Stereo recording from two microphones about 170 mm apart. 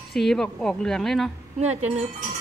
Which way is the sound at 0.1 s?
Centre (ahead or behind).